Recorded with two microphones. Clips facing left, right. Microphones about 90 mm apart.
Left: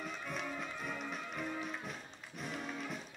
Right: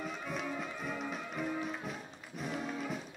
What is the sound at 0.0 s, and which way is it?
Music, centre (ahead or behind).